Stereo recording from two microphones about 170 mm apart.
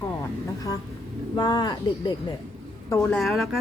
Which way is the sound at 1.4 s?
25° left (ahead or behind).